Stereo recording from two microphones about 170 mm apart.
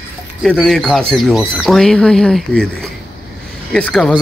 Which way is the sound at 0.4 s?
Centre (ahead or behind).